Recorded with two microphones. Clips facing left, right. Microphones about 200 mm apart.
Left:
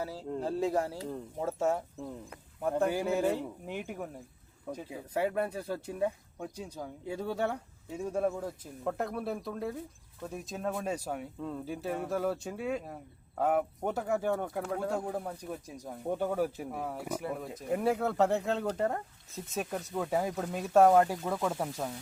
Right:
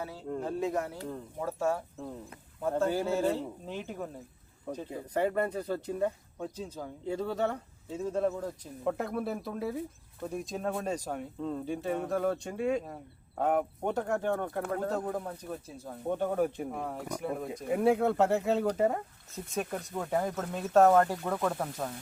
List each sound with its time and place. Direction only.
0.0 s speech: 35° left (ahead or behind); by 8.4 s 10° left (ahead or behind)
8.8 s speech: centre (ahead or behind)